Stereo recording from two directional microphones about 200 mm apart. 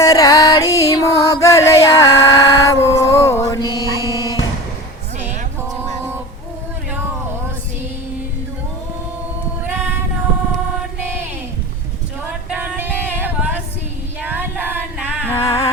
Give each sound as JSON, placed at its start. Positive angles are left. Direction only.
{"t": 0.0, "sound": "music", "side_deg": 20}
{"t": 12.5, "sound": "music", "side_deg": -10}
{"t": 14.2, "sound": "a sound", "side_deg": -10}
{"t": 15.2, "sound": "music", "side_deg": 10}